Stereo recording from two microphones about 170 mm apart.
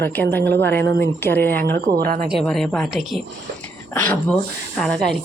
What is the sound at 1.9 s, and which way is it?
Speech, 60° right (ahead or behind).